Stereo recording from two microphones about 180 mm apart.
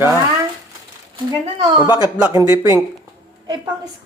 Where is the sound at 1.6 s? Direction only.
25° right (ahead or behind).